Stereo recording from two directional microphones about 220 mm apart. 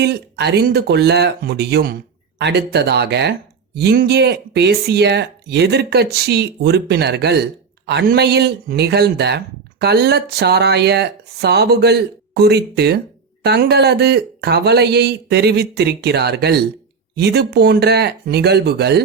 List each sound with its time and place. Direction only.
0.0 s speech: 50° right (ahead or behind)